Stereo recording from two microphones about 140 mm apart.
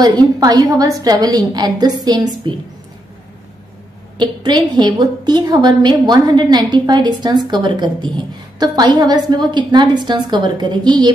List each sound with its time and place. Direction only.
0.0 s a woman's voice: 30° right (ahead or behind)
4.2 s a woman's voice: 30° right (ahead or behind)